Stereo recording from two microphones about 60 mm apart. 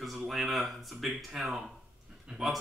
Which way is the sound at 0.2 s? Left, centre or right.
Centre.